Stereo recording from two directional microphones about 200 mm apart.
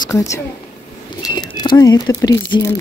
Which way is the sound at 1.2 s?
20° left (ahead or behind).